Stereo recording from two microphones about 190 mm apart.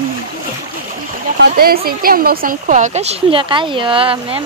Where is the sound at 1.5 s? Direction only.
50° right (ahead or behind).